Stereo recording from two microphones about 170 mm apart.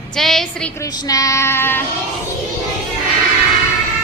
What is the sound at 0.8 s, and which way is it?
Speech, 20° left (ahead or behind).